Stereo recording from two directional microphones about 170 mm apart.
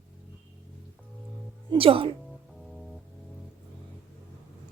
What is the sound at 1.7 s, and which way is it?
Speech, 30° right (ahead or behind).